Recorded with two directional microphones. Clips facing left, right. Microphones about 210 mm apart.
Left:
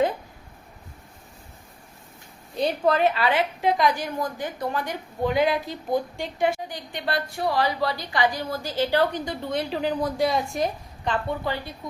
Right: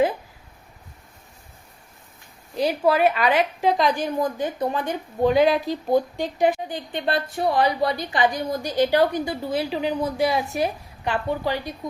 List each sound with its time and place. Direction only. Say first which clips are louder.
2.6 s speech: right 2 dB; 10° right (ahead or behind)
3.8 s a woman's voice: right 2 dB; 20° right (ahead or behind)